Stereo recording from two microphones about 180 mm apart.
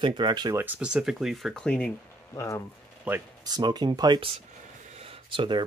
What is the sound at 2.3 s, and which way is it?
Speech, 15° left (ahead or behind).